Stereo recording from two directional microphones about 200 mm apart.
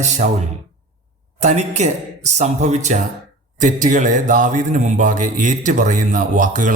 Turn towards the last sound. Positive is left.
turn(degrees=-40)  # may be behind; listen again after turning